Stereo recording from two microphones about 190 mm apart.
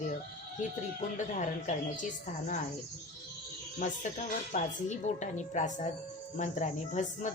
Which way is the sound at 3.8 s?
40° left (ahead or behind).